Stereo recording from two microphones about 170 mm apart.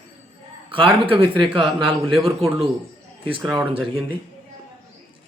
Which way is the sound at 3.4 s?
5° right (ahead or behind).